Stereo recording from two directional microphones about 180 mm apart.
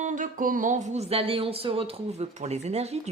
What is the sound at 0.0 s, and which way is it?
Speech, 45° right (ahead or behind).